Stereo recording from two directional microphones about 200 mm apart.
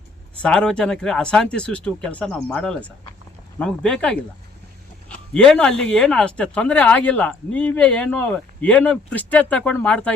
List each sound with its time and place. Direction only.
0.4 s speech: 5° left (ahead or behind)